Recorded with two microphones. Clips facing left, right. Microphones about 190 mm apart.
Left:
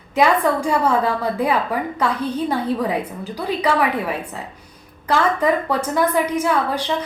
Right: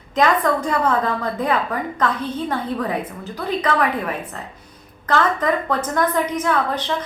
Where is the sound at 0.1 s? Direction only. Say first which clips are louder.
Left 1 dB; 10° left (ahead or behind).